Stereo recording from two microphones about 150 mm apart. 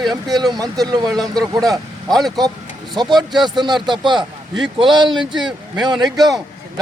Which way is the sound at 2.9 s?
30° right (ahead or behind).